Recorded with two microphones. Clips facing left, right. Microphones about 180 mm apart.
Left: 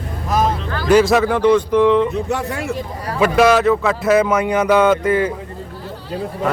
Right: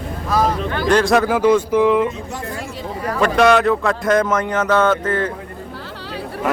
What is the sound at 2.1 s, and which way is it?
Speech, 70° left (ahead or behind).